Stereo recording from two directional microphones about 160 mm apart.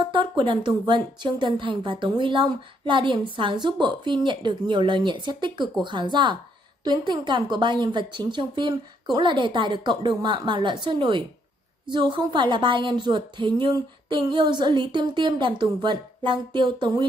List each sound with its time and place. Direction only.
0.1 s a woman's voice: 30° right (ahead or behind)